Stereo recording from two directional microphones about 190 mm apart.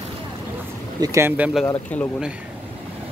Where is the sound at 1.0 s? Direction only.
15° right (ahead or behind).